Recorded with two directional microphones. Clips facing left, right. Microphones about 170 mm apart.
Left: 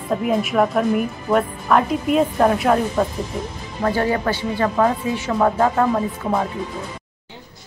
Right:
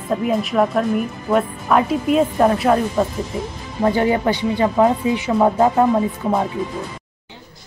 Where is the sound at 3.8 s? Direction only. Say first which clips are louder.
Right 3 dB; 20° right (ahead or behind).